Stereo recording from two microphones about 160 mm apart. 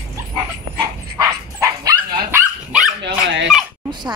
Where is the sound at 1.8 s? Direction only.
15° right (ahead or behind).